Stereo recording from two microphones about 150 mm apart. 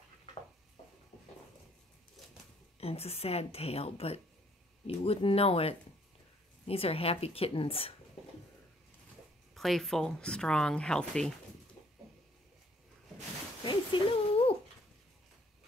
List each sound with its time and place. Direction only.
2.8 s a woman's voice: 40° left (ahead or behind)
9.5 s speech: centre (ahead or behind)
13.7 s a sound: 35° left (ahead or behind)